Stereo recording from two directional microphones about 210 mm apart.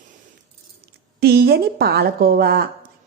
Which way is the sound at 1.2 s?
50° right (ahead or behind).